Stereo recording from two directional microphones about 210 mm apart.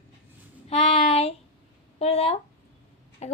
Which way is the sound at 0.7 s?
30° left (ahead or behind).